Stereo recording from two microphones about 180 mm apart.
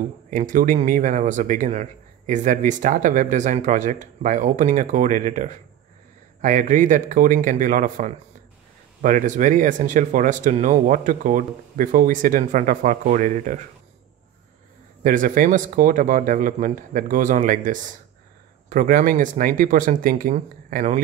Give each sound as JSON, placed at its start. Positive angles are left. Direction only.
{"t": 0.3, "sound": "speech", "side_deg": -45}
{"t": 15.0, "sound": "speech", "side_deg": -50}